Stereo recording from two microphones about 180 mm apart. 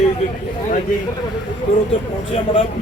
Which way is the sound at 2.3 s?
35° left (ahead or behind).